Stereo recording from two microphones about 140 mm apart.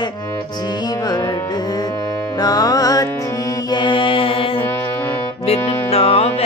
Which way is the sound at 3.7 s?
35° left (ahead or behind).